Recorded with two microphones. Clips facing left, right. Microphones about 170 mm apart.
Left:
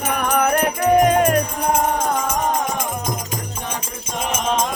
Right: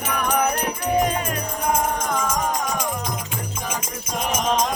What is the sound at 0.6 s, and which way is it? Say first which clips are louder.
Music: left 6 dB; 75° left (ahead or behind).